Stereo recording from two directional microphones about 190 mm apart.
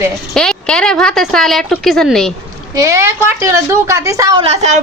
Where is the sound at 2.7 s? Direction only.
15° right (ahead or behind).